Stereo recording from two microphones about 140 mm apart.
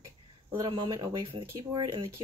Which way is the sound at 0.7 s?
35° right (ahead or behind).